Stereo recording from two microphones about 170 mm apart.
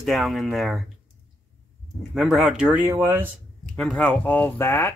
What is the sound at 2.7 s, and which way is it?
Speech, 15° right (ahead or behind).